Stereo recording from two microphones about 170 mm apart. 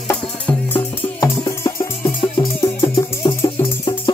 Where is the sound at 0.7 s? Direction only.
20° left (ahead or behind).